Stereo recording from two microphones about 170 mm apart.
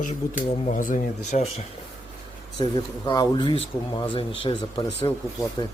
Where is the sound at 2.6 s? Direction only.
25° left (ahead or behind).